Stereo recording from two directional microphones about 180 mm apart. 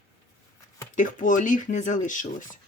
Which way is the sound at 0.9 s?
45° left (ahead or behind).